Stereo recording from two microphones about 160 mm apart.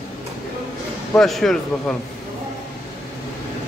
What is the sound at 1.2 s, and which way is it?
Speech, centre (ahead or behind).